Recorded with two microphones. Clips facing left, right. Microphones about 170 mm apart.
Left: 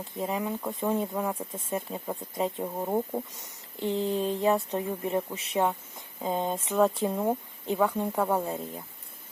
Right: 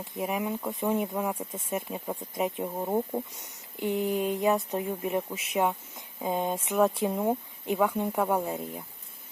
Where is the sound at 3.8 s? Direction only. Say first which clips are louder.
Even; 25° left (ahead or behind).